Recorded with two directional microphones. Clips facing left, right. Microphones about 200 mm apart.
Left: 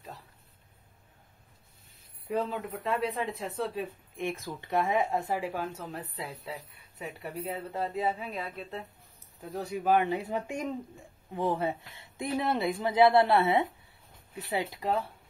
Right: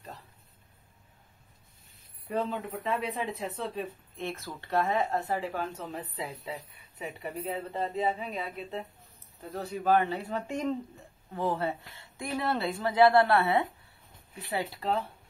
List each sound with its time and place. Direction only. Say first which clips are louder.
2.2 s speech: even; centre (ahead or behind)
4.2 s speech: left 3 dB; 15° left (ahead or behind); by 8.8 s centre (ahead or behind)
9.4 s speech: left 1 dB; 10° left (ahead or behind)